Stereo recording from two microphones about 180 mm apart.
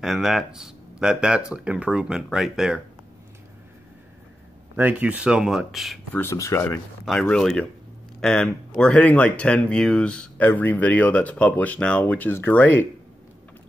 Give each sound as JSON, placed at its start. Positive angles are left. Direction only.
{"t": 0.0, "sound": "speech", "side_deg": 0}
{"t": 4.7, "sound": "speech", "side_deg": -10}
{"t": 6.1, "sound": "speech", "side_deg": 15}
{"t": 7.1, "sound": "speech", "side_deg": 5}